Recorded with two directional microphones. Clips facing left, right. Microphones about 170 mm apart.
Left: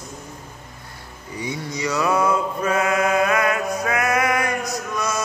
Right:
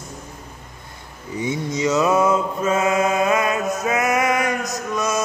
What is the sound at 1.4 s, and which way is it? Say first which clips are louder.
Mantra: right 5 dB; 20° right (ahead or behind).